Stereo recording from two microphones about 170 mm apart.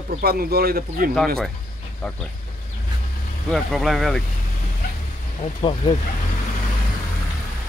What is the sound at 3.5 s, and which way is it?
Speech, centre (ahead or behind).